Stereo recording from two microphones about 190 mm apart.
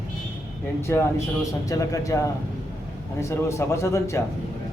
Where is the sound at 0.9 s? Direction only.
15° left (ahead or behind).